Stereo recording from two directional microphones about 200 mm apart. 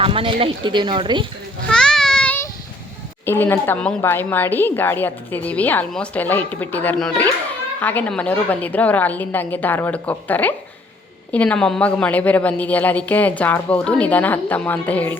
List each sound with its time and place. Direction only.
0.0 s speech: 25° right (ahead or behind)
1.6 s a sound: 5° left (ahead or behind)
3.2 s a woman's voice: 10° left (ahead or behind)